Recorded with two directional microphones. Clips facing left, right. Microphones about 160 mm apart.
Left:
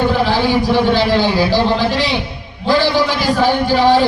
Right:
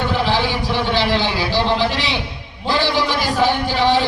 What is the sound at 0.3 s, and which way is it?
A man's voice, 45° left (ahead or behind).